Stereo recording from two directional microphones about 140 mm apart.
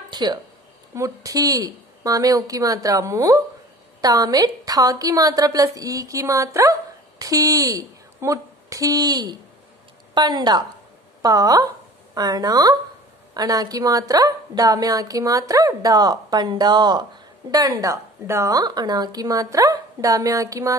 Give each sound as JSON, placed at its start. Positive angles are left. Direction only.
{"t": 0.1, "sound": "a woman's voice", "side_deg": -30}